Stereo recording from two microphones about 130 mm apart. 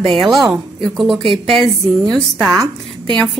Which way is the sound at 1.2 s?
45° right (ahead or behind).